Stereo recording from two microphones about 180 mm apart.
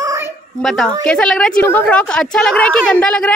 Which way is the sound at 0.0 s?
15° right (ahead or behind).